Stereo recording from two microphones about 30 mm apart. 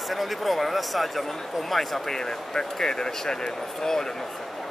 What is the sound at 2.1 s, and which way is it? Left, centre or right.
Speech, left.